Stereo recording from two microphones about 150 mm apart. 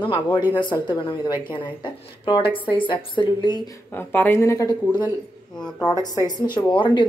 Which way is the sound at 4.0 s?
15° left (ahead or behind).